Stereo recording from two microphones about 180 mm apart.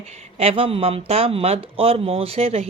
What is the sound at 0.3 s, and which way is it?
Speech, 30° right (ahead or behind).